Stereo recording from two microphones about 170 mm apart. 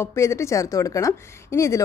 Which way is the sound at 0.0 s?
15° left (ahead or behind).